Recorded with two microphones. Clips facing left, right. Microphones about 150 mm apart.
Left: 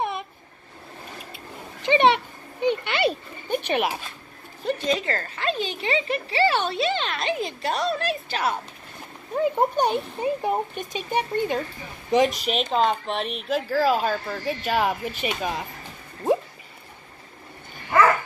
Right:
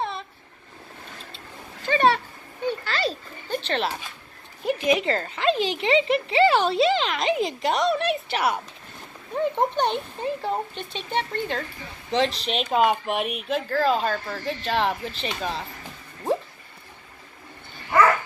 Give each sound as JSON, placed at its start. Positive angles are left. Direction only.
{"t": 0.0, "sound": "a sound", "side_deg": 15}
{"t": 1.8, "sound": "a sound", "side_deg": 20}
{"t": 4.6, "sound": "a woman's voice", "side_deg": -15}
{"t": 5.5, "sound": "speech", "side_deg": -90}
{"t": 6.0, "sound": "a woman's voice", "side_deg": -25}
{"t": 9.3, "sound": "speech", "side_deg": 5}
{"t": 12.6, "sound": "speech", "side_deg": -10}
{"t": 13.5, "sound": "speech", "side_deg": 5}